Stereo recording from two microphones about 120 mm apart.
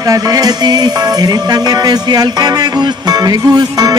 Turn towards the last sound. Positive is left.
turn(degrees=-35)  # may be behind; listen again after turning